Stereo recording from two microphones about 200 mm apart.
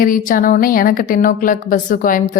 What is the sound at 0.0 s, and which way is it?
A woman's voice, 45° left (ahead or behind).